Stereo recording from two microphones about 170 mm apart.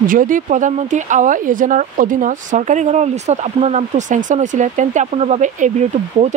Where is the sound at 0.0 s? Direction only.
55° right (ahead or behind).